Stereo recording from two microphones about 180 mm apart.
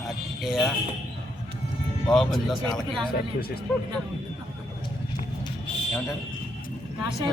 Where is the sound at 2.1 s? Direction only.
Centre (ahead or behind).